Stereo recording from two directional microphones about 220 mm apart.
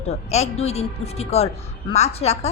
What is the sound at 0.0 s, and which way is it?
A woman's voice, 30° left (ahead or behind).